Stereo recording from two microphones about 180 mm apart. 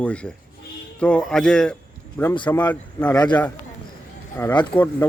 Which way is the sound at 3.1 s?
25° left (ahead or behind).